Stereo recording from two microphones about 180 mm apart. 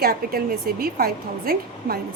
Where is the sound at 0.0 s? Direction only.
55° right (ahead or behind).